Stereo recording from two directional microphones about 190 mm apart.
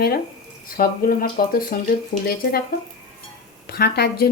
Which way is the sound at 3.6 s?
55° left (ahead or behind).